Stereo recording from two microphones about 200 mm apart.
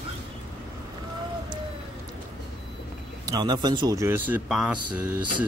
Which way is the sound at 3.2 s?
20° right (ahead or behind).